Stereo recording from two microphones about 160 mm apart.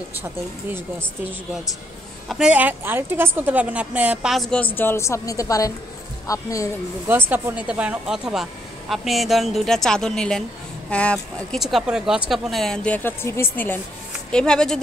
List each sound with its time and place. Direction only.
2.2 s a woman's voice: 5° right (ahead or behind)
4.7 s a woman's voice: 15° left (ahead or behind)
7.1 s speech: 10° right (ahead or behind); by 14.8 s 5° left (ahead or behind)